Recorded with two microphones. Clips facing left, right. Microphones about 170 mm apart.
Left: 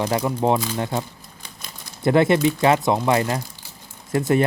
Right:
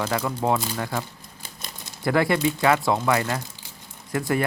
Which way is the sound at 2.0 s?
25° left (ahead or behind).